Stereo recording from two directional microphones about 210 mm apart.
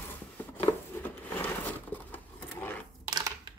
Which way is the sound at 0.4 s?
10° left (ahead or behind).